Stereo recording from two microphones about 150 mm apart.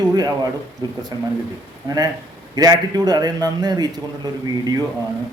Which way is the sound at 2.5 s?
25° right (ahead or behind).